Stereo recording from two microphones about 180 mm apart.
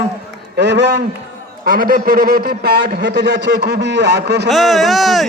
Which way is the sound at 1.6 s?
55° right (ahead or behind).